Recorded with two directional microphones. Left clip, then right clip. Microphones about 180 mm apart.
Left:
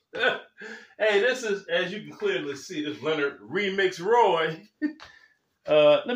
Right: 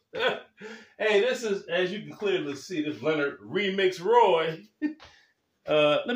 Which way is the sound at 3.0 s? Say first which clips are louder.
Left 1 dB; centre (ahead or behind).